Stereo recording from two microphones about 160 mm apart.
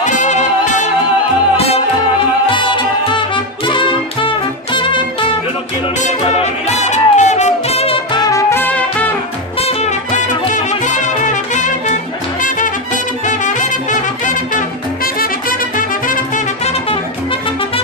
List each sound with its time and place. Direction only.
0.0 s music: 50° left (ahead or behind)
2.4 s music: 30° left (ahead or behind)
6.0 s music: 45° left (ahead or behind); by 9.1 s 10° left (ahead or behind)
9.6 s music: 40° left (ahead or behind)